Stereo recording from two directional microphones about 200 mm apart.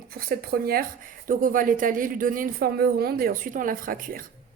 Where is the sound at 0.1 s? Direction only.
50° right (ahead or behind).